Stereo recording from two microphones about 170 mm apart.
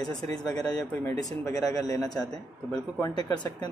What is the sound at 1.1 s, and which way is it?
Speech, 20° left (ahead or behind).